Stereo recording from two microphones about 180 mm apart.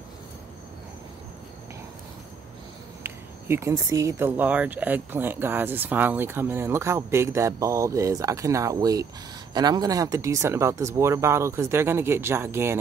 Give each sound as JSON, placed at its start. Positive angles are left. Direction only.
{"t": 3.4, "sound": "speech", "side_deg": -15}